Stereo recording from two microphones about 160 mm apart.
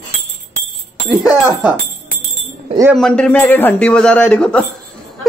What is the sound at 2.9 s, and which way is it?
A man's voice, 5° left (ahead or behind).